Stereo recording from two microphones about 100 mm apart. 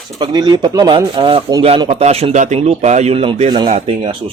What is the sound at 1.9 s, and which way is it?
Speech, 90° right.